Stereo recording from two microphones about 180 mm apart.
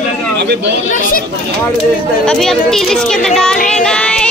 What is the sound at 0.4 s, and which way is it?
Speech, 65° right (ahead or behind).